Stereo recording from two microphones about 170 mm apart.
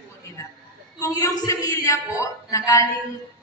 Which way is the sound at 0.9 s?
20° left (ahead or behind).